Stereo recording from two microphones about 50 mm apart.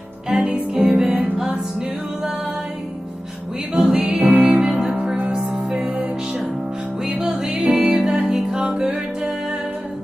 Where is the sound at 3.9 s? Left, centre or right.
Right.